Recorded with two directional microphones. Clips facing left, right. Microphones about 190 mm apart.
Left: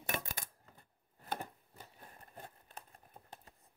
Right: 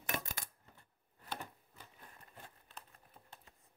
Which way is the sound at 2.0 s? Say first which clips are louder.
Left 5 dB; 50° left (ahead or behind).